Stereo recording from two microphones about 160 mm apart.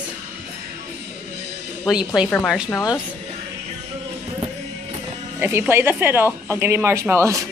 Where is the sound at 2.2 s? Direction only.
5° right (ahead or behind).